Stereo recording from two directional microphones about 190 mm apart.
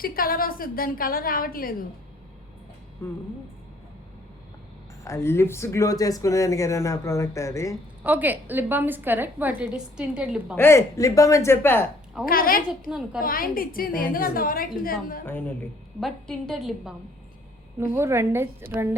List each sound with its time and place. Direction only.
0.0 s a woman's voice: 50° left (ahead or behind)
5.0 s speech: 15° left (ahead or behind)
8.0 s a woman's voice: 10° right (ahead or behind)
10.6 s speech: 15° left (ahead or behind)
12.2 s a woman's voice: 50° left (ahead or behind)
16.0 s a woman's voice: centre (ahead or behind)
17.9 s a woman's voice: 15° right (ahead or behind)